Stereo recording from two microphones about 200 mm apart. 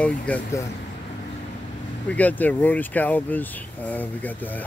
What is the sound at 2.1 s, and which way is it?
Speech, 10° left (ahead or behind).